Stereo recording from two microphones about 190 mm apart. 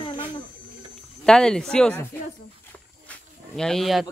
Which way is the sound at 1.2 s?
5° left (ahead or behind).